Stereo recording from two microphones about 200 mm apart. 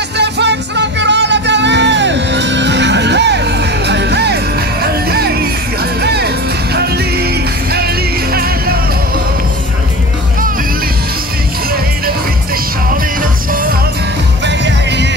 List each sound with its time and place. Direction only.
0.2 s music: 60° right (ahead or behind)
12.9 s music: 45° right (ahead or behind)
14.4 s music: 60° right (ahead or behind)